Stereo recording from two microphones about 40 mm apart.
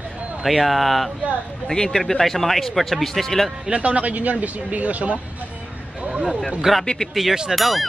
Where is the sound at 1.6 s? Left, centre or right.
Centre.